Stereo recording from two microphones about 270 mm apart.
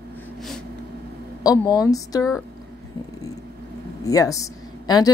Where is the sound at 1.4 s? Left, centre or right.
Centre.